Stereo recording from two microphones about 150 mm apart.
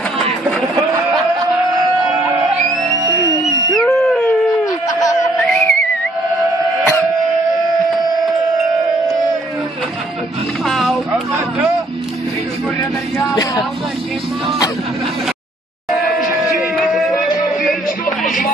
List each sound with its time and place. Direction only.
0.2 s run: 5° left (ahead or behind)
3.8 s dog: 5° left (ahead or behind)
5.4 s music: centre (ahead or behind)
10.6 s a sound: centre (ahead or behind)
16.7 s a sound: centre (ahead or behind)
18.2 s music: 65° left (ahead or behind)